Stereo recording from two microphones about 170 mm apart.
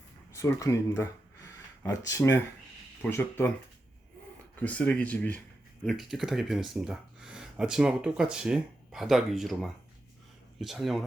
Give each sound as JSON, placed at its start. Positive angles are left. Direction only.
{"t": 0.3, "sound": "speech", "side_deg": 15}
{"t": 1.5, "sound": "a sound", "side_deg": 20}
{"t": 3.0, "sound": "speech", "side_deg": 10}
{"t": 4.6, "sound": "speech", "side_deg": 5}